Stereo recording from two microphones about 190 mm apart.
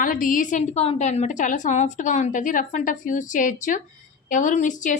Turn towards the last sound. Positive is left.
turn(degrees=40)  # may be behind; listen again after turning